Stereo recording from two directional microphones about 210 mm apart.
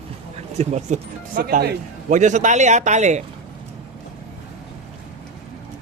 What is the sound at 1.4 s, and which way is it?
Speech, 50° right (ahead or behind).